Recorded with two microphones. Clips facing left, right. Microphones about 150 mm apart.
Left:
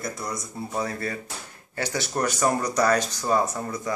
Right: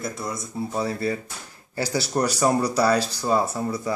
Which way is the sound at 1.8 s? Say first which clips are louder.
Right 3 dB; 35° right (ahead or behind).